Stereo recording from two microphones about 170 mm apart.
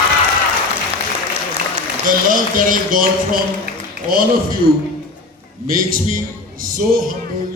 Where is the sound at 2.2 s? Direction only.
55° right (ahead or behind).